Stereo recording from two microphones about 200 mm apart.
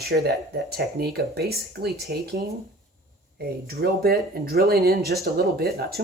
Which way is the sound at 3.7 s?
50° right (ahead or behind).